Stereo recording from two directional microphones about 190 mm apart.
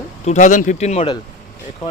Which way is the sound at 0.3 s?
40° left (ahead or behind).